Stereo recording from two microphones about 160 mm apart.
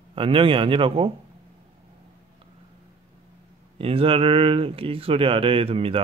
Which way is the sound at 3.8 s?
35° right (ahead or behind).